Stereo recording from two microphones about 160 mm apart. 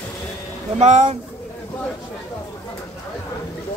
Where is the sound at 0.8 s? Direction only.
45° right (ahead or behind).